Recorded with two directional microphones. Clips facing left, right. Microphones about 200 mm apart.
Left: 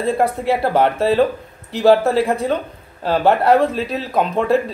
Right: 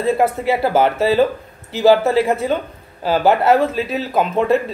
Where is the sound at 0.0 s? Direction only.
Centre (ahead or behind).